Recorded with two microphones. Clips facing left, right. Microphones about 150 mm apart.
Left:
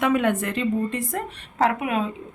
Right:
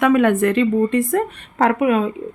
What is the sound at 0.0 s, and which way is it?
A woman's voice, 60° right (ahead or behind).